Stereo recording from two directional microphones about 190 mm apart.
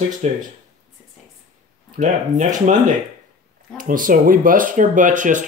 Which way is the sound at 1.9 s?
40° right (ahead or behind).